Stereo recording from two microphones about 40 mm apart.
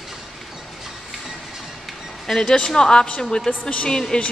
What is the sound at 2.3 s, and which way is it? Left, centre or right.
Speech, centre.